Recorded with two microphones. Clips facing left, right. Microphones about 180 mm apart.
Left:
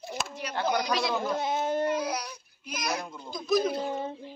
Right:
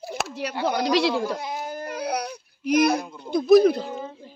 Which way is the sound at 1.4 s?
25° left (ahead or behind).